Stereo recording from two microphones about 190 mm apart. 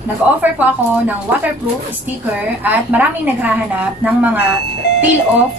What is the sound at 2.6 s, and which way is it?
A woman's voice, 10° right (ahead or behind).